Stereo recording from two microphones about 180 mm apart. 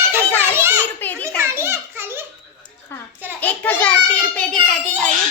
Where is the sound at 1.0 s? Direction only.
10° left (ahead or behind).